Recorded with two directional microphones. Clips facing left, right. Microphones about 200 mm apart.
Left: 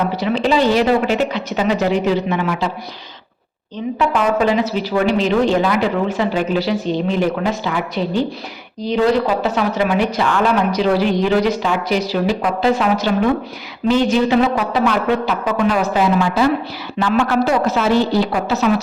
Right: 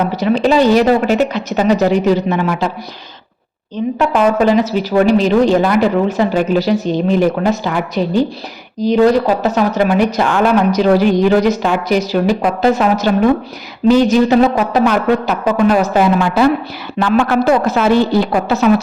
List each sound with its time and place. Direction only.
0.2 s speech: 45° right (ahead or behind)
3.9 s speech: 45° right (ahead or behind)
9.4 s a woman's voice: 45° right (ahead or behind)